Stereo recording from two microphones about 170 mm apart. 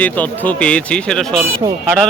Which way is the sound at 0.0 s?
10° left (ahead or behind).